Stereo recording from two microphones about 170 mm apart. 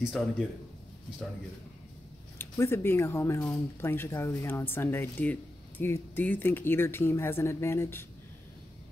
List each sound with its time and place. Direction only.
0.0 s speech: centre (ahead or behind)
2.3 s speech: 15° left (ahead or behind)